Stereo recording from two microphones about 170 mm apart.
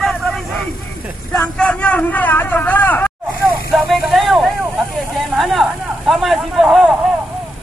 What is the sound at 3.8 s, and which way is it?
Vehicle, centre (ahead or behind).